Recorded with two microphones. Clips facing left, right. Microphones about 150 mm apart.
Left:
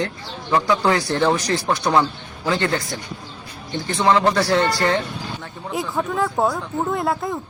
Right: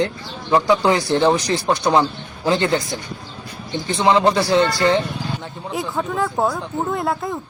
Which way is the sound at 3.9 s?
15° right (ahead or behind).